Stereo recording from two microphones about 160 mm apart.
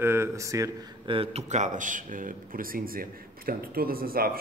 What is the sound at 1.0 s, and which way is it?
A man's voice, 35° right (ahead or behind).